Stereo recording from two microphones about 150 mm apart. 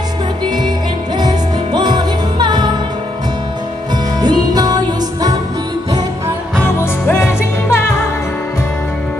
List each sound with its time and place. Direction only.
1.1 s music: 30° right (ahead or behind)
4.2 s music: 25° right (ahead or behind)
6.8 s music: 15° left (ahead or behind)